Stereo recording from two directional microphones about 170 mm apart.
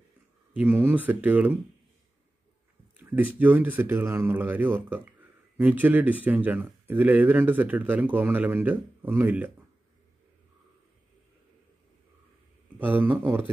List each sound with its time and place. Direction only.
0.6 s speech: 10° right (ahead or behind)
3.0 s speech: 10° right (ahead or behind)
12.7 s speech: 10° right (ahead or behind)